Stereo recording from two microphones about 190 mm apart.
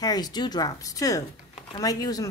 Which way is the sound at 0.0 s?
20° left (ahead or behind).